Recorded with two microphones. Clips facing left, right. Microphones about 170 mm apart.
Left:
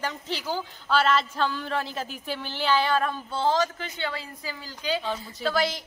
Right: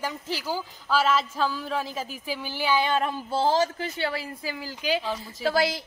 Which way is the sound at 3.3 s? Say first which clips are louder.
Right 2 dB; 30° right (ahead or behind).